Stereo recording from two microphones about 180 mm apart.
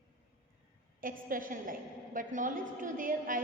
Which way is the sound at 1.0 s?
50° right (ahead or behind).